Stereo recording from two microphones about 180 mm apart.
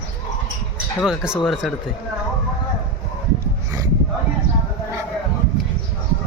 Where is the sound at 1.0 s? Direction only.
5° right (ahead or behind).